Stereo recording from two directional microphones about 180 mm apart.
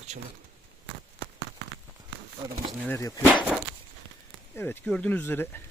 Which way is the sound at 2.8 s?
15° left (ahead or behind).